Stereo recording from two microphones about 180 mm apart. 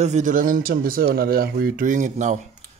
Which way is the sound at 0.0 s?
40° right (ahead or behind).